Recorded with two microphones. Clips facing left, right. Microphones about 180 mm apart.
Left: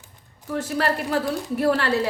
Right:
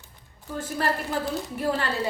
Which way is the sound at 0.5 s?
75° left (ahead or behind).